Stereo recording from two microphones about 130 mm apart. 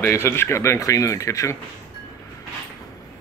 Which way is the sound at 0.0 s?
20° left (ahead or behind).